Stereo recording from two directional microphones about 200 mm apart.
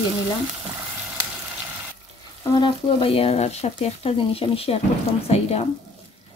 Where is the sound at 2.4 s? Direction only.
20° left (ahead or behind).